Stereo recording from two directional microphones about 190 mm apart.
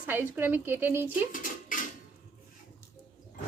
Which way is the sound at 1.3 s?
45° left (ahead or behind).